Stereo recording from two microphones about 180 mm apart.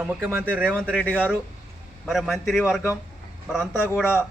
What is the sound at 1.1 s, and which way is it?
Speech, 10° right (ahead or behind).